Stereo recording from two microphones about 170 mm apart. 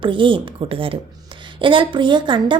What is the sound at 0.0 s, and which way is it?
A woman's voice, 30° right (ahead or behind).